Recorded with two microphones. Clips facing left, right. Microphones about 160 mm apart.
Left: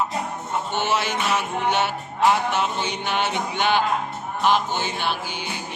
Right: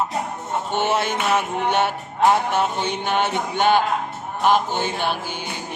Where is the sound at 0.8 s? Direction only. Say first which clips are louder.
Right 3 dB; 55° right (ahead or behind).